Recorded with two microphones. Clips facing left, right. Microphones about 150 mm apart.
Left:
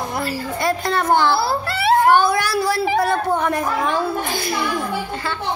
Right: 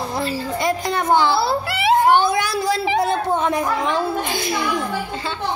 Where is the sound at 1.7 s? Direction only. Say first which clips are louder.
Left 1 dB; 15° right (ahead or behind).